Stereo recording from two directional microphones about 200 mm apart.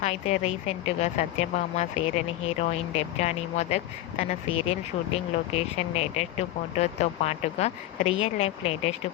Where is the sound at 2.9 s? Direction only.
30° left (ahead or behind).